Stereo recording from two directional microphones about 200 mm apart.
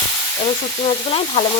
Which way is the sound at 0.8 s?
30° left (ahead or behind).